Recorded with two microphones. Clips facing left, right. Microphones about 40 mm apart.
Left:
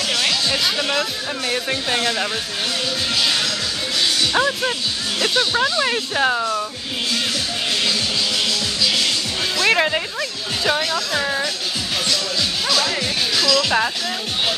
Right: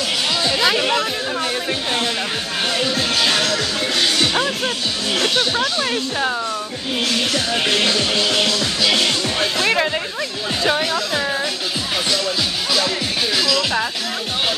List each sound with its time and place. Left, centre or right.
1.5 s speech: centre
3.3 s music: right
4.3 s speech: centre
5.8 s speech: centre
7.8 s music: right
9.7 s speech: centre
10.6 s speech: centre
13.4 s music: centre